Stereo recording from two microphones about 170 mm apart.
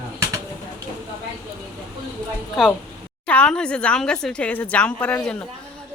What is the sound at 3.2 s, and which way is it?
Speech, 5° left (ahead or behind).